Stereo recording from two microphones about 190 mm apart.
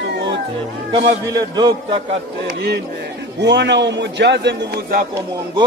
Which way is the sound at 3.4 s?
65° right (ahead or behind).